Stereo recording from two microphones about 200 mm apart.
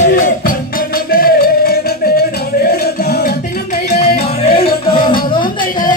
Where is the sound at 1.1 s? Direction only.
50° left (ahead or behind).